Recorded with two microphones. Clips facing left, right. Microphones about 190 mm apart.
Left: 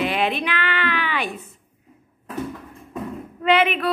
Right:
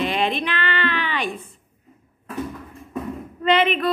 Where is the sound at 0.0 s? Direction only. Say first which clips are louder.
Even; 10° left (ahead or behind).